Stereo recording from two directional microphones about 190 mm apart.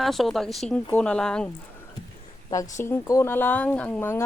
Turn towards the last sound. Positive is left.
turn(degrees=10)  # may be behind; listen again after turning